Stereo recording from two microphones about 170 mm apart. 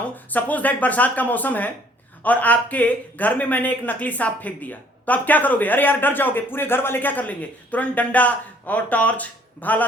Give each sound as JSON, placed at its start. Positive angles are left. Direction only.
{"t": 0.3, "sound": "speech", "side_deg": 10}